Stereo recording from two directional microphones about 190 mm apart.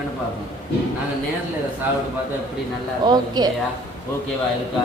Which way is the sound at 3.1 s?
20° right (ahead or behind).